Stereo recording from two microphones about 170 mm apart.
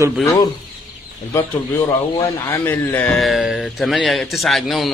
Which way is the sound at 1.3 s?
15° left (ahead or behind).